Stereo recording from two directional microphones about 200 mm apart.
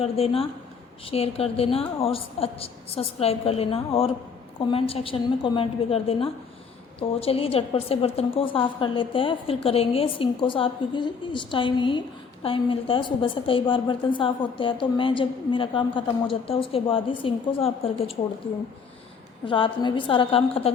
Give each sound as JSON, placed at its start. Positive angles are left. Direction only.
{"t": 0.0, "sound": "a woman's voice", "side_deg": 30}
{"t": 19.5, "sound": "a woman's voice", "side_deg": 25}